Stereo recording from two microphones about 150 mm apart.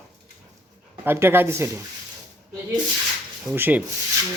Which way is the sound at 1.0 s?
15° right (ahead or behind).